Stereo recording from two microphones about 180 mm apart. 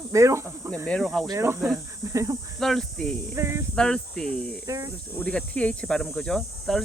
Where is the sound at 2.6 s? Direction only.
Centre (ahead or behind).